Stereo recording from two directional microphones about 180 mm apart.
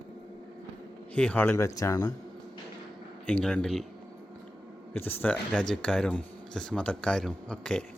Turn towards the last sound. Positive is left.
turn(degrees=5)  # may be behind; listen again after turning